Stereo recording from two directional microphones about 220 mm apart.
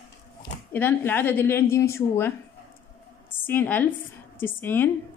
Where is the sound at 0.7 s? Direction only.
10° left (ahead or behind).